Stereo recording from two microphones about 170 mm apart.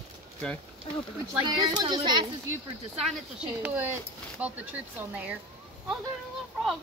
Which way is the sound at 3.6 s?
10° right (ahead or behind).